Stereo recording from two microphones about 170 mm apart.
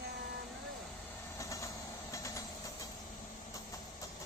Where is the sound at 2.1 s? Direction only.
20° left (ahead or behind).